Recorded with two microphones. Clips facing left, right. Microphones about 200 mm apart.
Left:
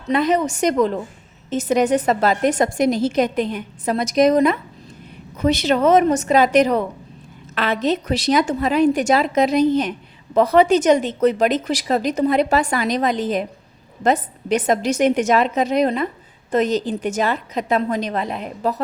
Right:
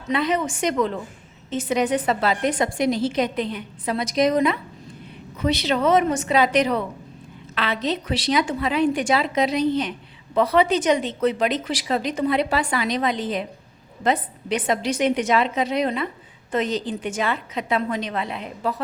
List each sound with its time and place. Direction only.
0.1 s a woman's voice: 45° left (ahead or behind)